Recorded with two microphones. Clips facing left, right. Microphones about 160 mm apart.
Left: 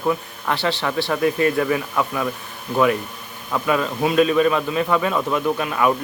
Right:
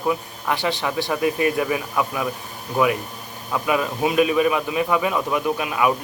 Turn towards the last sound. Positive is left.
turn(degrees=-10)  # may be behind; listen again after turning